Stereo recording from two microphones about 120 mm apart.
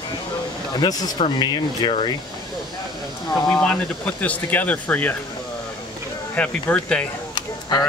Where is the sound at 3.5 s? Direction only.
10° left (ahead or behind).